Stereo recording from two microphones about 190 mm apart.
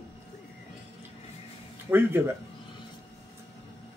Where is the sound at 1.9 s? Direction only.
10° right (ahead or behind).